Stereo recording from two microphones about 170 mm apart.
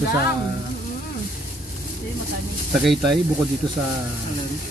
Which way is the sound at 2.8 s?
Centre (ahead or behind).